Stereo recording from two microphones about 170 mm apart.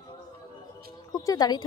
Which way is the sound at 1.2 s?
20° left (ahead or behind).